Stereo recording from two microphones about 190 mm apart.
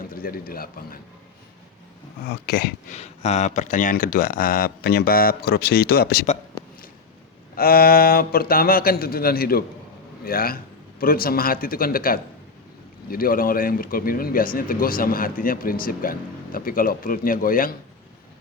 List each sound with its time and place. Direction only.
0.1 s speech: 50° left (ahead or behind)
2.5 s a sound: 55° left (ahead or behind)
2.9 s speech: 35° left (ahead or behind); by 6.2 s 55° left (ahead or behind)
7.5 s speech: 50° left (ahead or behind)